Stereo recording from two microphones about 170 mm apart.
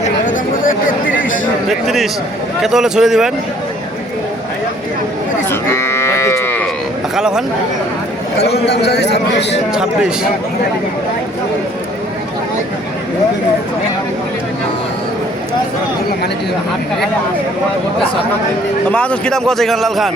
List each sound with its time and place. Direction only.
0.3 s chatter: 55° left (ahead or behind)
1.6 s a man's voice: centre (ahead or behind)
5.5 s livestock: 15° left (ahead or behind)
7.2 s speech: 5° right (ahead or behind)
8.6 s a man's voice: 75° left (ahead or behind)
18.9 s a man's voice: 10° left (ahead or behind)